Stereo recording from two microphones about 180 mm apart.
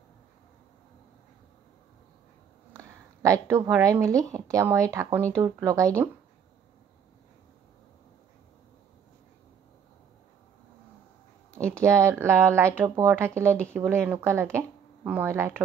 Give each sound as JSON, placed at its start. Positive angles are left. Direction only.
{"t": 3.2, "sound": "speech", "side_deg": -15}
{"t": 11.8, "sound": "speech", "side_deg": -15}